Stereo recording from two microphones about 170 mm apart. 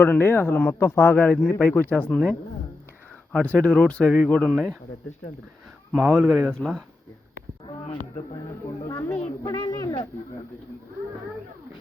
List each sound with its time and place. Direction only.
0.0 s speech: 10° left (ahead or behind)
3.3 s speech: 5° left (ahead or behind)
5.9 s speech: 10° right (ahead or behind)
8.9 s speech: 10° left (ahead or behind)